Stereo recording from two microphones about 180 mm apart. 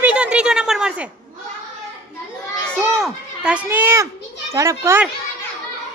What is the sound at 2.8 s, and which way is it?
A woman's voice, 5° right (ahead or behind).